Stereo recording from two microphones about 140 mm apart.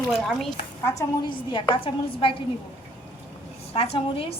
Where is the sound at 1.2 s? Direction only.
35° left (ahead or behind).